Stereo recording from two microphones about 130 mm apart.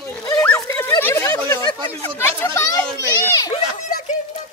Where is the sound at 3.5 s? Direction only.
65° left (ahead or behind).